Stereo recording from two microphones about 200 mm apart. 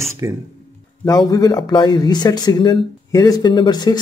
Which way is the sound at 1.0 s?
20° left (ahead or behind).